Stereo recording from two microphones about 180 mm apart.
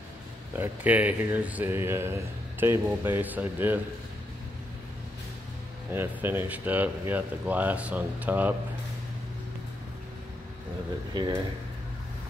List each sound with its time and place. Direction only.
0.5 s speech: 10° right (ahead or behind)
5.9 s speech: 10° right (ahead or behind)
11.1 s speech: 25° right (ahead or behind)